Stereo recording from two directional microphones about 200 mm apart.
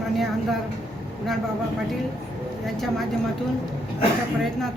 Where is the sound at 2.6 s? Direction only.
Centre (ahead or behind).